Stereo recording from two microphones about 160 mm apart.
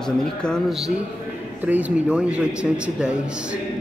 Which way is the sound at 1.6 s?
10° right (ahead or behind).